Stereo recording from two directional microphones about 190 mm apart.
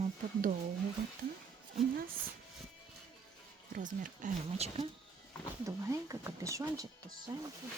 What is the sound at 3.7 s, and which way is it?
Speech, 45° right (ahead or behind).